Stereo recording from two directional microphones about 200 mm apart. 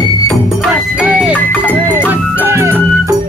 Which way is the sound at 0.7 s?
5° right (ahead or behind).